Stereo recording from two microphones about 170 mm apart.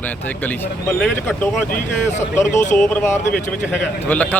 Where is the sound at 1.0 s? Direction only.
10° left (ahead or behind).